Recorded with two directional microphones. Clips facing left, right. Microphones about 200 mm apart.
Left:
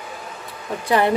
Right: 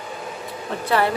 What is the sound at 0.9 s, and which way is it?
Speech, 15° left (ahead or behind).